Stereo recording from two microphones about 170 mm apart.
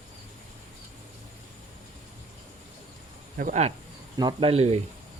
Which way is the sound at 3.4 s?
40° right (ahead or behind).